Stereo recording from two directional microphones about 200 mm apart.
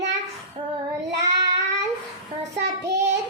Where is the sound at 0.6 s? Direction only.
30° right (ahead or behind).